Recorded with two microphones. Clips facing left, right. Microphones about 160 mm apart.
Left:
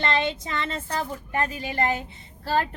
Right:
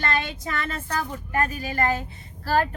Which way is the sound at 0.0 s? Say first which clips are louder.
Left 2 dB; 25° left (ahead or behind).